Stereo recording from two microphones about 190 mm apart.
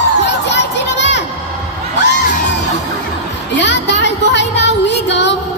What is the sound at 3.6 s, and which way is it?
Music, 70° left (ahead or behind).